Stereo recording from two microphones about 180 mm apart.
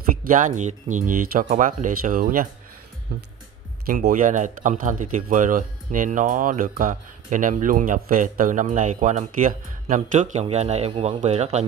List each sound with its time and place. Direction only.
0.2 s speech: 45° right (ahead or behind)